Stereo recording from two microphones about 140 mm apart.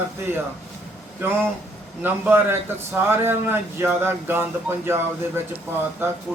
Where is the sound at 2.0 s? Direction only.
15° right (ahead or behind).